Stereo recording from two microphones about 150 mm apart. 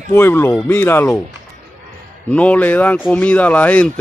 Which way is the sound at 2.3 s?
10° left (ahead or behind).